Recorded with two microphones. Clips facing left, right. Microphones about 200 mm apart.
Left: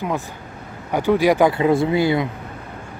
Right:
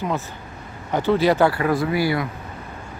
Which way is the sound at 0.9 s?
10° left (ahead or behind).